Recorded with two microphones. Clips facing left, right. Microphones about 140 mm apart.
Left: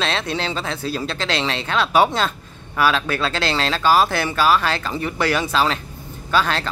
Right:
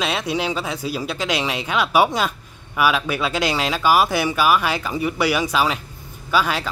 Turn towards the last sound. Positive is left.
turn(degrees=-10)  # may be behind; listen again after turning